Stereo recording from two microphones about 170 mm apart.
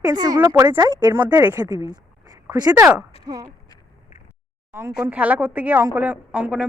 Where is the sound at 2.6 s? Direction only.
25° right (ahead or behind).